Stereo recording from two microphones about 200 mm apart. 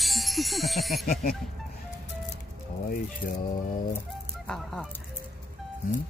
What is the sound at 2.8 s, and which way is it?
Speech, 45° left (ahead or behind).